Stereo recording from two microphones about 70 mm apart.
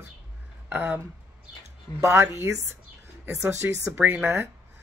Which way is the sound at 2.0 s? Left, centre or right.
Right.